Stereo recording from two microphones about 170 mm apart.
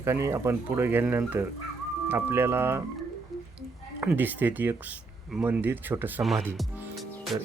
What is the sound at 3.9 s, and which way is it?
Speech, 10° right (ahead or behind).